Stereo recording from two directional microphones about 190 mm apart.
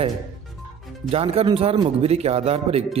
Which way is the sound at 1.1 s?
30° right (ahead or behind).